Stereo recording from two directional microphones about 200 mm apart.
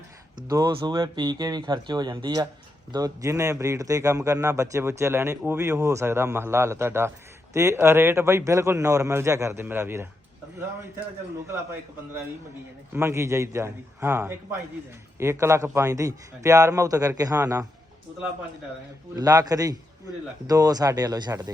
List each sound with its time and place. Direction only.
0.4 s a man's voice: 20° right (ahead or behind)
11.4 s a man's voice: 10° right (ahead or behind)
12.9 s a man's voice: 15° right (ahead or behind)
19.1 s speech: 20° right (ahead or behind)